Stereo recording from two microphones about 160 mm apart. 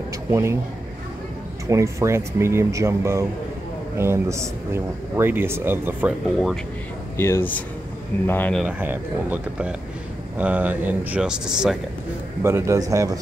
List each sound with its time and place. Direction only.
0.3 s a man's voice: 15° right (ahead or behind)
1.7 s a man's voice: 20° right (ahead or behind)
6.2 s speech: centre (ahead or behind)
7.2 s speech: 15° left (ahead or behind)
8.6 s a man's voice: 10° right (ahead or behind)
12.4 s a man's voice: 15° right (ahead or behind)